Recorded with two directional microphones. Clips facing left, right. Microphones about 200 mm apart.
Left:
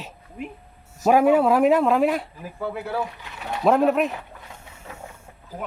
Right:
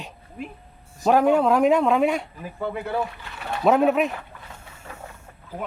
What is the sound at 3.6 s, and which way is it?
Speech, centre (ahead or behind).